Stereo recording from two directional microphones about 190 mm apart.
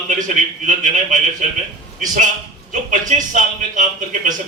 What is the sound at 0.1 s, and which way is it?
A man's voice, 40° right (ahead or behind).